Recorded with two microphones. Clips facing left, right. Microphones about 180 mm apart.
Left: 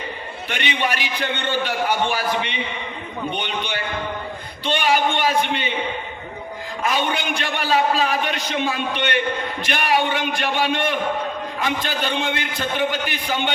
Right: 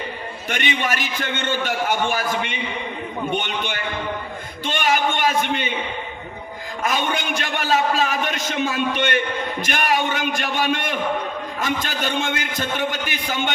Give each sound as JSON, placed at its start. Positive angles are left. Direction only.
{"t": 0.4, "sound": "a man's voice", "side_deg": -45}
{"t": 6.8, "sound": "a man's voice", "side_deg": -45}